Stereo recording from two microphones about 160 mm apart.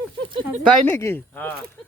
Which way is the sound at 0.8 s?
15° left (ahead or behind).